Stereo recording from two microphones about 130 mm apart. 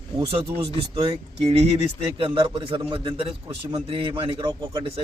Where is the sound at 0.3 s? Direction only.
50° right (ahead or behind).